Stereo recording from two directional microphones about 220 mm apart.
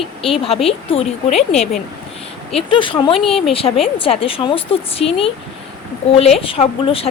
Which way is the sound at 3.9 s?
25° left (ahead or behind).